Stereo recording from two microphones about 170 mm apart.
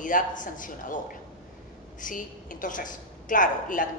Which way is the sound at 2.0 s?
50° left (ahead or behind).